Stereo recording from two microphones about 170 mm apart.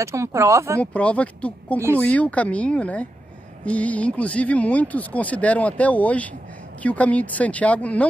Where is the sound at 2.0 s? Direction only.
10° left (ahead or behind).